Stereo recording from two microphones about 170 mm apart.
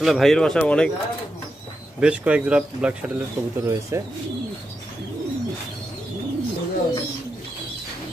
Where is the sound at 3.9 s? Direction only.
20° right (ahead or behind).